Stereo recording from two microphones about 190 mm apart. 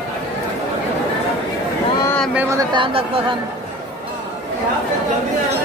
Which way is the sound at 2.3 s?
15° right (ahead or behind).